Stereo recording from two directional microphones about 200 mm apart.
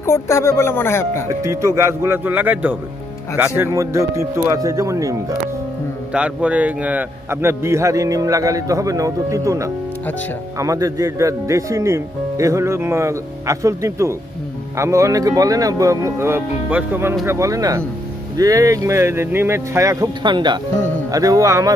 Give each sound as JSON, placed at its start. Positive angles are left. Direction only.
{"t": 0.0, "sound": "speech", "side_deg": 15}
{"t": 1.4, "sound": "a man's voice", "side_deg": -15}